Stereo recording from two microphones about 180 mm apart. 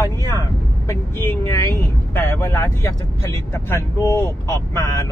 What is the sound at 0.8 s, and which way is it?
Speech, 15° left (ahead or behind).